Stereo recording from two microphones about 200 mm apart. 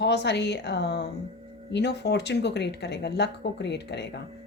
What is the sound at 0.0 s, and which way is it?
Speech, 60° left (ahead or behind).